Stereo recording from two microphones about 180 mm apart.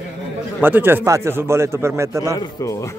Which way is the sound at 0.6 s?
10° right (ahead or behind).